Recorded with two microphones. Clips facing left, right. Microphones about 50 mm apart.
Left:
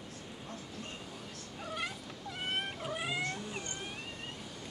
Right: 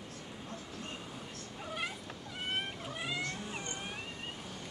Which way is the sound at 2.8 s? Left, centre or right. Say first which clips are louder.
Left 3 dB; centre.